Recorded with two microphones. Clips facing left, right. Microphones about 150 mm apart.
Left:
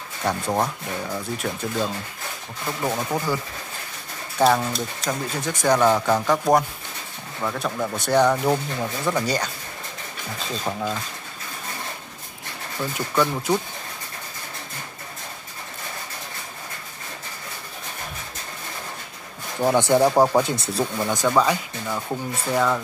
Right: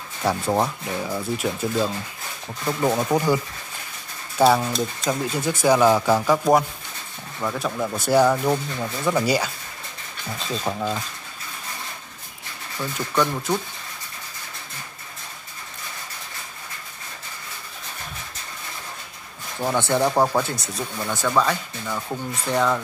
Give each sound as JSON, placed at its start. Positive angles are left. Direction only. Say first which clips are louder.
{"t": 0.2, "sound": "speech", "louder": "right 2 dB", "side_deg": -5}
{"t": 4.4, "sound": "speech", "louder": "right 2 dB", "side_deg": 0}
{"t": 8.5, "sound": "speech", "louder": "left 1 dB", "side_deg": 10}
{"t": 9.1, "sound": "speech", "louder": "right 5 dB", "side_deg": -10}
{"t": 10.6, "sound": "speech", "louder": "right 1 dB", "side_deg": -5}
{"t": 13.1, "sound": "speech", "louder": "left 1 dB", "side_deg": 10}
{"t": 19.6, "sound": "speech", "louder": "left 4 dB", "side_deg": 15}